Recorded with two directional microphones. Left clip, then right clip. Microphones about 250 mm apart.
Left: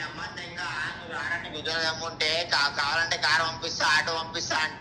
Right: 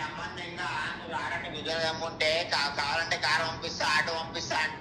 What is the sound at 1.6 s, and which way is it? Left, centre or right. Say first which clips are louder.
A man's voice: left 1 dB; centre.